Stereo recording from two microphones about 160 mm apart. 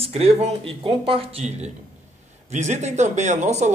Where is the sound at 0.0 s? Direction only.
40° right (ahead or behind).